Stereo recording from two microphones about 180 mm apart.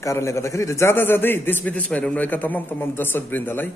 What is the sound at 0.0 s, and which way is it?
A man's voice, 15° left (ahead or behind).